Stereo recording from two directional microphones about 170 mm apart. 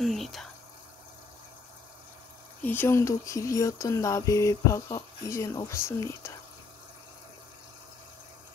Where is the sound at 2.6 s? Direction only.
10° left (ahead or behind).